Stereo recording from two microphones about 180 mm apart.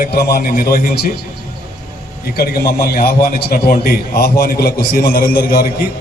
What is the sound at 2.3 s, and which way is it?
A man's voice, 60° left (ahead or behind).